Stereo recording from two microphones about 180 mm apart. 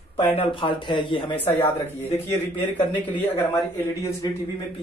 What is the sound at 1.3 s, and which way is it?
Speech, 10° left (ahead or behind).